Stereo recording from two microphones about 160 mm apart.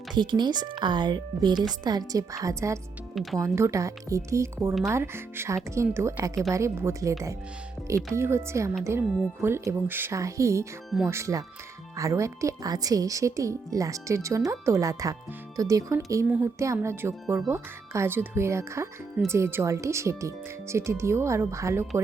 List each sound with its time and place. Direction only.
0.1 s speech: 25° right (ahead or behind)